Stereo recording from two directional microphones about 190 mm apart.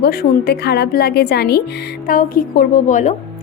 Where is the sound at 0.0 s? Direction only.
55° left (ahead or behind).